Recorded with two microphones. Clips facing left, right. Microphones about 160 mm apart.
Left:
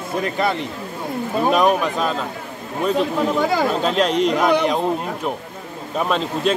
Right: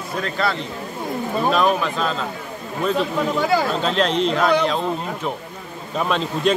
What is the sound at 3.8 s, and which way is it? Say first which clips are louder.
Speech: left 2 dB; 10° left (ahead or behind).